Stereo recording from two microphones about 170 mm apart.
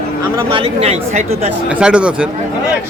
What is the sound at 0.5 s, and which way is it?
Speech, 35° right (ahead or behind).